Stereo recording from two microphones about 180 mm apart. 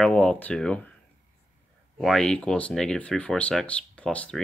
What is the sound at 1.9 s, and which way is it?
Speech, centre (ahead or behind).